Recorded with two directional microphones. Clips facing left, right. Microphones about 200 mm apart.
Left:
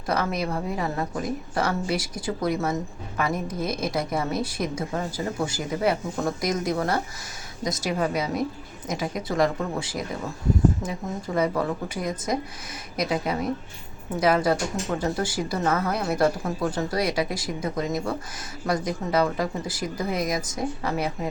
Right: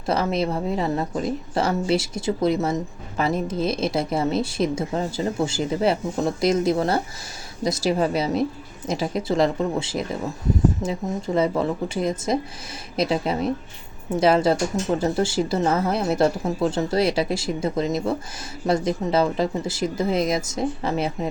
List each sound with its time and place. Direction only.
0.0 s speech: 25° right (ahead or behind)
11.3 s speech: 25° right (ahead or behind)